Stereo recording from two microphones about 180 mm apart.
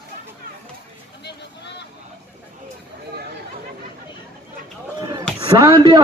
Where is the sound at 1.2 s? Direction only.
70° left (ahead or behind).